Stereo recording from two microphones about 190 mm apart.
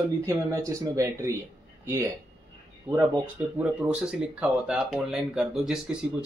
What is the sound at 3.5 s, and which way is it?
Speech, 5° right (ahead or behind).